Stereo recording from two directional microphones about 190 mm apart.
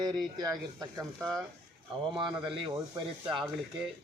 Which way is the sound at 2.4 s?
25° right (ahead or behind).